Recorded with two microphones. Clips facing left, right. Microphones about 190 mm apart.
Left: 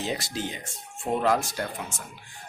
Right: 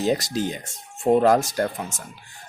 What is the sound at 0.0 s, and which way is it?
Speech, 40° right (ahead or behind).